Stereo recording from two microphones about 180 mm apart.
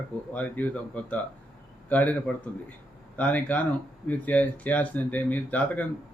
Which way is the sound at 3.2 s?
10° left (ahead or behind).